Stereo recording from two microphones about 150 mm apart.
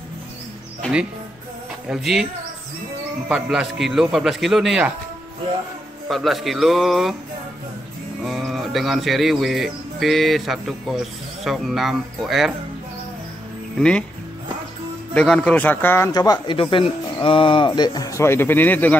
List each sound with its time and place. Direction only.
1.9 s speech: centre (ahead or behind)
3.3 s speech: 5° right (ahead or behind)
6.0 s speech: centre (ahead or behind)
8.2 s speech: centre (ahead or behind)
13.7 s speech: 5° left (ahead or behind)
15.1 s a man's voice: 5° left (ahead or behind)
16.1 s speech: 25° left (ahead or behind)
16.7 s speech: 35° left (ahead or behind); by 18.9 s 10° left (ahead or behind)